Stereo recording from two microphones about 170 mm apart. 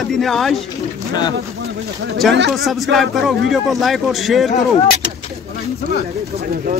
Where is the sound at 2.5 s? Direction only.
Centre (ahead or behind).